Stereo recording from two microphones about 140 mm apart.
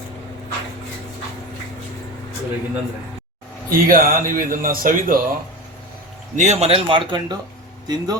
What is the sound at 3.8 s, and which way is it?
Speech, 90° right.